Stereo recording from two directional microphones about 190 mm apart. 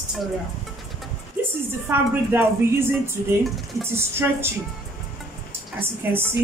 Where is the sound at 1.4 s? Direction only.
10° right (ahead or behind).